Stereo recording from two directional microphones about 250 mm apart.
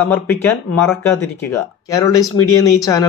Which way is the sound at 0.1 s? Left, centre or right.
Centre.